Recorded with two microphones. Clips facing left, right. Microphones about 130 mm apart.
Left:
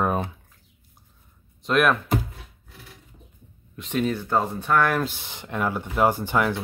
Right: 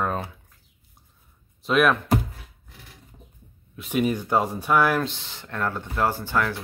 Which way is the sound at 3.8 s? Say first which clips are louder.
Right 1 dB; 10° right (ahead or behind).